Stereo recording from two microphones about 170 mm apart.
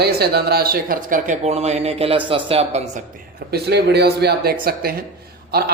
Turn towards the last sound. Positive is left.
turn(degrees=-65)  # may be behind; listen again after turning